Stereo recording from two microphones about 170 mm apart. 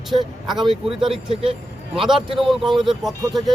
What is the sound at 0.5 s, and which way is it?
Speech, 30° right (ahead or behind).